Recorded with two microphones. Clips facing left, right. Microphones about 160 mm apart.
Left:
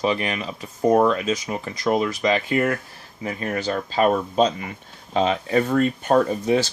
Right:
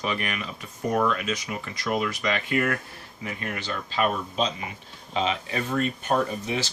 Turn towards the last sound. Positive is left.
turn(degrees=40)  # may be behind; listen again after turning